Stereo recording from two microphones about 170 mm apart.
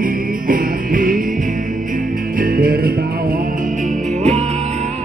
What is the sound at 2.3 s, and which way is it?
Music, 60° right (ahead or behind).